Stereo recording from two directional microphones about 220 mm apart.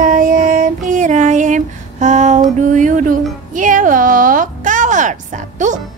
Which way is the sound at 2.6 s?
35° right (ahead or behind).